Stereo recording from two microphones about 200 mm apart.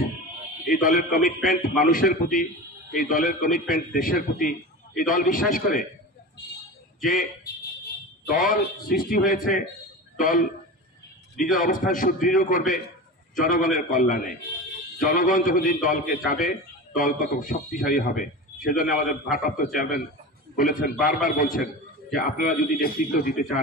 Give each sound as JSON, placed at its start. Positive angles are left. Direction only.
{"t": 0.7, "sound": "a man's voice", "side_deg": 45}
{"t": 8.3, "sound": "a man's voice", "side_deg": 45}
{"t": 11.5, "sound": "a man's voice", "side_deg": 45}